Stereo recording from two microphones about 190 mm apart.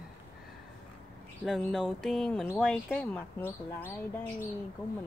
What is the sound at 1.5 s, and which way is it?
Speech, 5° left (ahead or behind).